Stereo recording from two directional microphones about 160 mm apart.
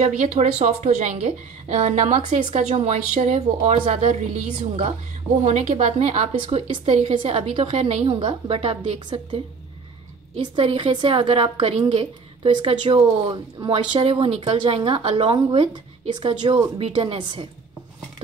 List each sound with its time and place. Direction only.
0.0 s a woman's voice: 45° right (ahead or behind)